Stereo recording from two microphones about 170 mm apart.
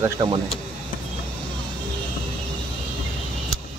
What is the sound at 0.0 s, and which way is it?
Speech, 25° right (ahead or behind).